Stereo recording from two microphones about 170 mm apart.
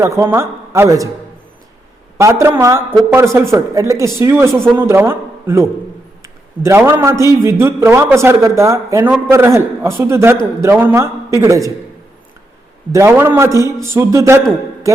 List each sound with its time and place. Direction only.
0.0 s speech: 15° right (ahead or behind)
2.1 s a man's voice: 15° right (ahead or behind)
12.9 s speech: 15° right (ahead or behind)